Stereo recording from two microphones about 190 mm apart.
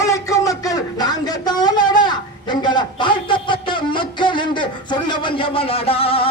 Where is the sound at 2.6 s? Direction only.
25° left (ahead or behind).